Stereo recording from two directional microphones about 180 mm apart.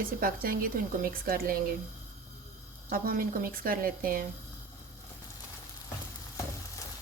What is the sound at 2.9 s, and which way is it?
A woman's voice, 55° right (ahead or behind).